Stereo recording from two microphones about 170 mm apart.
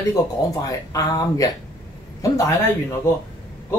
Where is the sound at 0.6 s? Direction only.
20° left (ahead or behind).